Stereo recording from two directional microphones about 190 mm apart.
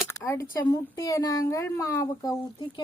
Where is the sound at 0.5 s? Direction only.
20° left (ahead or behind).